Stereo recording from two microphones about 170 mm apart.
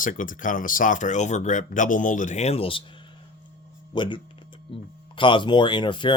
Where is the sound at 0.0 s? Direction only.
50° left (ahead or behind); by 2.8 s 35° left (ahead or behind).